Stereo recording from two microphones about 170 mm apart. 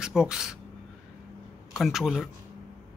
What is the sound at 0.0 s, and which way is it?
Speech, 5° right (ahead or behind).